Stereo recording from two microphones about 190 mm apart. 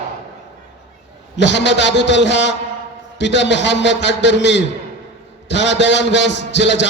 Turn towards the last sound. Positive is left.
turn(degrees=70)  # may be behind; listen again after turning